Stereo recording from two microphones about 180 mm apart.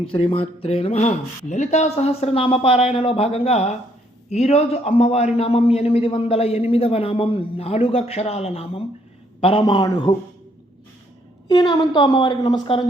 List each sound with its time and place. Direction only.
0.0 s a man's voice: 30° left (ahead or behind)
11.4 s a woman's voice: 25° left (ahead or behind)